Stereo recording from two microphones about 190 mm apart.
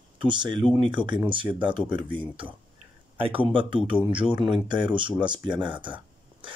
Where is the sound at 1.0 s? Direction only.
25° right (ahead or behind).